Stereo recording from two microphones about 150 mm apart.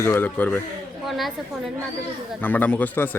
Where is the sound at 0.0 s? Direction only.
15° left (ahead or behind).